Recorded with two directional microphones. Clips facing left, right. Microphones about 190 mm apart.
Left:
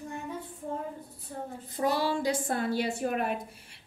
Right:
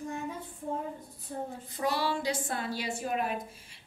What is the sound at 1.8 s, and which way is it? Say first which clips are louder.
A woman's voice: left 3 dB; 45° left (ahead or behind).